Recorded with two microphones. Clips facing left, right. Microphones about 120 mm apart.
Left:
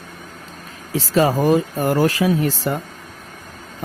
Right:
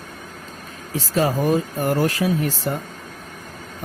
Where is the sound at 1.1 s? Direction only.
90° left.